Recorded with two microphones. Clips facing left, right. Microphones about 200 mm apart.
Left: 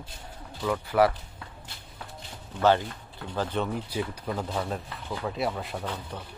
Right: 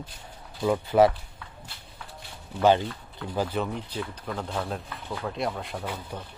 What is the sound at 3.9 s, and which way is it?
Speech, 10° left (ahead or behind).